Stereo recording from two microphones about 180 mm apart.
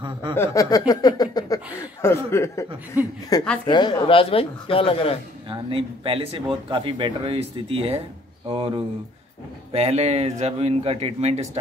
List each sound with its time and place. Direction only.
0.3 s speech: 15° left (ahead or behind)
2.9 s a woman's voice: 10° right (ahead or behind)
3.3 s a woman's voice: 20° left (ahead or behind)
5.5 s speech: 30° right (ahead or behind)